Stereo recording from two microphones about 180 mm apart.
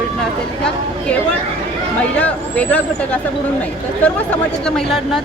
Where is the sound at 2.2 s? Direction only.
10° left (ahead or behind).